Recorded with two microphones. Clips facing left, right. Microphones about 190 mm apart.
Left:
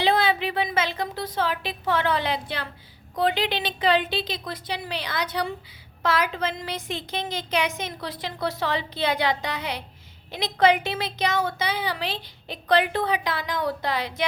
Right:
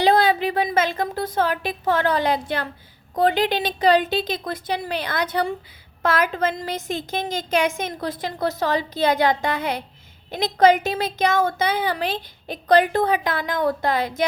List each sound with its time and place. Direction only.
0.0 s a woman's voice: 40° right (ahead or behind)